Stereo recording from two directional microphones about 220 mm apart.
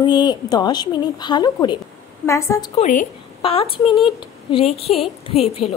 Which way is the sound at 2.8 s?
35° left (ahead or behind).